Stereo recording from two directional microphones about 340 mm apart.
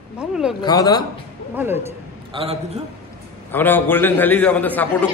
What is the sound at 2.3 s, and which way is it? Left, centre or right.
Speech, centre.